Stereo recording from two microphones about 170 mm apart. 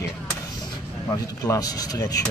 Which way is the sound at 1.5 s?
20° left (ahead or behind).